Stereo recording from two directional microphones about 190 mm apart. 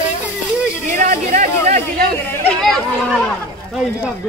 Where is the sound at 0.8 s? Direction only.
40° right (ahead or behind).